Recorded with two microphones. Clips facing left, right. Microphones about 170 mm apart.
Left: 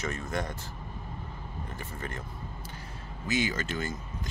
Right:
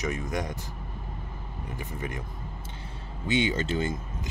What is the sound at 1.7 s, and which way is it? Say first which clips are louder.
Speech: right 5 dB; 15° right (ahead or behind).